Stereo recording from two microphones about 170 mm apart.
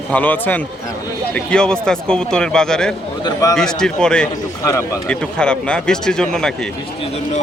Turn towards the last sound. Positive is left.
turn(degrees=5)  # may be behind; listen again after turning